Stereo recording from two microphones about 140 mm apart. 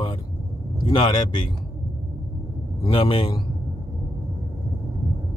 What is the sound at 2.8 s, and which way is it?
Speech, 40° left (ahead or behind).